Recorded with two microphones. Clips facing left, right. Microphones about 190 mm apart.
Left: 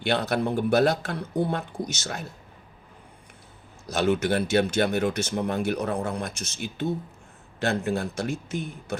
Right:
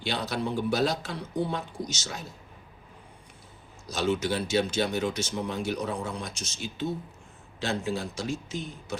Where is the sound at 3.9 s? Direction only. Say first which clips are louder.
Left 4 dB; 60° left (ahead or behind).